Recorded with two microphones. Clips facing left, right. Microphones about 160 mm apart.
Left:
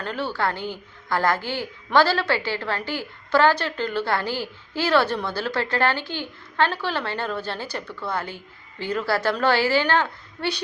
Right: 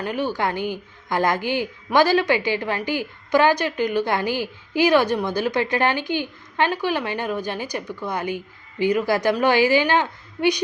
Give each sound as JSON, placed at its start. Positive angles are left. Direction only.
{"t": 0.0, "sound": "a woman's voice", "side_deg": -15}